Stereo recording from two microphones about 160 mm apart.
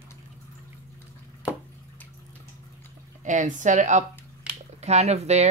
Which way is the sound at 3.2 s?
50° right (ahead or behind).